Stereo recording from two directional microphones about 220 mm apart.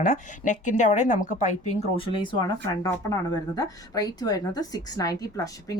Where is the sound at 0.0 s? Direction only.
35° left (ahead or behind).